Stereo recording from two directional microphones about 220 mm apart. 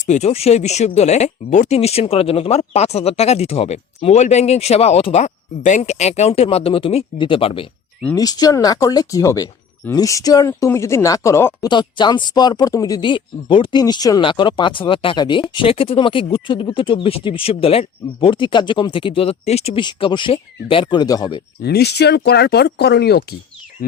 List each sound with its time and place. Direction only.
0.1 s speech: 30° left (ahead or behind)
21.6 s speech: 45° left (ahead or behind)